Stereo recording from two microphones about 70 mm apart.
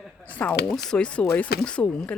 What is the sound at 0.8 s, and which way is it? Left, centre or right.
Speech, centre.